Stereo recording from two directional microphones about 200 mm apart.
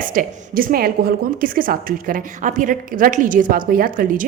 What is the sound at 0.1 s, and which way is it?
A woman's voice, 45° right (ahead or behind).